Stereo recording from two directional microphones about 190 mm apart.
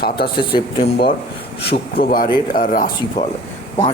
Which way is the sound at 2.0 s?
50° left (ahead or behind).